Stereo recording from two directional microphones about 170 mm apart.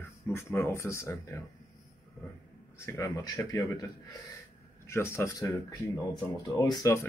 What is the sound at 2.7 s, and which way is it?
A man's voice, 15° left (ahead or behind).